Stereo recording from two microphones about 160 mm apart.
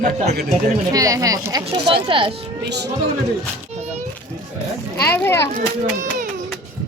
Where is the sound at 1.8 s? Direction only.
35° right (ahead or behind).